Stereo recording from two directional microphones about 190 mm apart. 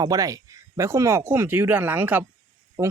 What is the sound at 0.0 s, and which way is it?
Speech, 20° right (ahead or behind).